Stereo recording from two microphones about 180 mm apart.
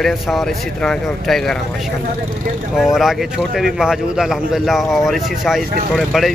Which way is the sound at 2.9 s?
Centre (ahead or behind).